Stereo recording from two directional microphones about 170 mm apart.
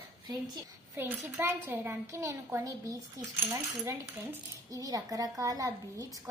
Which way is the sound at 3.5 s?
15° right (ahead or behind).